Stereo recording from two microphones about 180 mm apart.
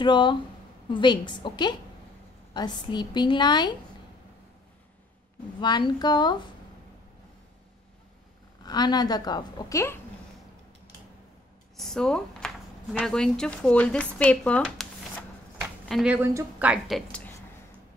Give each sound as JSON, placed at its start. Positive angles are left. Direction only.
{"t": 0.0, "sound": "a woman's voice", "side_deg": 25}
{"t": 5.6, "sound": "a woman's voice", "side_deg": 25}
{"t": 8.6, "sound": "a woman's voice", "side_deg": 20}
{"t": 11.7, "sound": "a woman's voice", "side_deg": 0}